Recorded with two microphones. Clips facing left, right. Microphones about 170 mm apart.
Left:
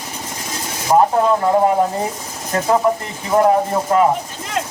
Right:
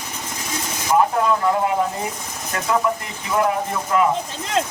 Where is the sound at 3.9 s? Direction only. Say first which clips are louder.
Left 4 dB; 35° left (ahead or behind).